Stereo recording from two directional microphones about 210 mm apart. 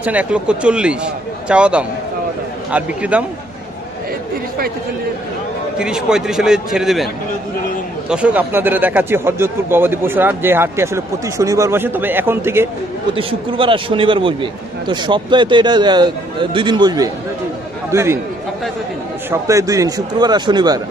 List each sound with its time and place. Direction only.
0.0 s speech: 5° right (ahead or behind)
5.8 s speech: 5° right (ahead or behind)
8.1 s speech: 5° right (ahead or behind)
13.1 s a man's voice: 25° right (ahead or behind)
19.3 s a man's voice: 15° right (ahead or behind)